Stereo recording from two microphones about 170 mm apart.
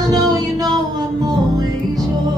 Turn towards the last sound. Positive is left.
turn(degrees=-20)  # may be behind; listen again after turning